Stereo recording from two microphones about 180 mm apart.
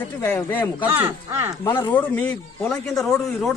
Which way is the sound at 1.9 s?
10° left (ahead or behind).